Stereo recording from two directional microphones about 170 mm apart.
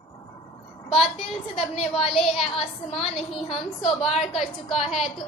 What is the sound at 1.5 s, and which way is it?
A woman's voice, 35° left (ahead or behind).